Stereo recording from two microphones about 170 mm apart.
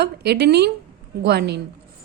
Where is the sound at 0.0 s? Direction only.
75° right (ahead or behind).